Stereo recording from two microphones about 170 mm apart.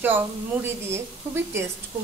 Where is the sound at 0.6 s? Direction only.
15° right (ahead or behind).